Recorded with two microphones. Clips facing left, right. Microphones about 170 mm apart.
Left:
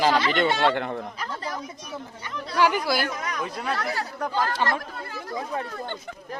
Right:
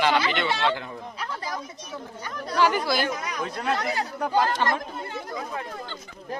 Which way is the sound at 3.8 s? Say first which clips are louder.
Right 1 dB; 20° right (ahead or behind).